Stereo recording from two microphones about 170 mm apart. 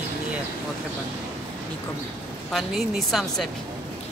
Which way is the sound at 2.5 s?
Centre (ahead or behind).